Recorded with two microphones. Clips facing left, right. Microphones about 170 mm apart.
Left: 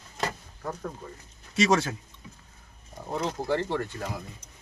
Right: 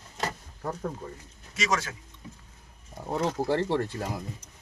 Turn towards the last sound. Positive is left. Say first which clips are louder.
# right 2 dB
turn(degrees=-30)  # may be behind; listen again after turning